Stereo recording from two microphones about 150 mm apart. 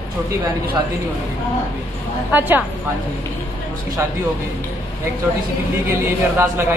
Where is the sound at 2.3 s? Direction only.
10° right (ahead or behind).